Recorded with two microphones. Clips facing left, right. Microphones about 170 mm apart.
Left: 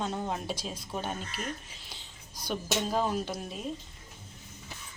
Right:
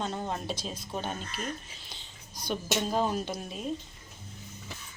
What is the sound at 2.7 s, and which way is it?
Speech, 5° right (ahead or behind).